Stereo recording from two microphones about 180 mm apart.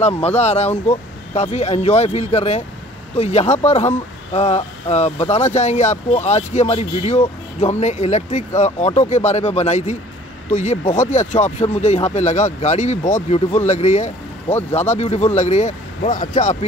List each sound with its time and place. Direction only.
0.4 s speech: 35° left (ahead or behind)